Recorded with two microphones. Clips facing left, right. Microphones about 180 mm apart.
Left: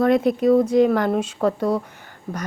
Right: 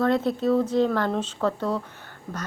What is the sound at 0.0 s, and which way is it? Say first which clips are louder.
Speech: left 5 dB; 15° left (ahead or behind).